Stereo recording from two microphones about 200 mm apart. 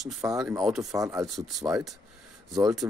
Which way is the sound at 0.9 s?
15° right (ahead or behind).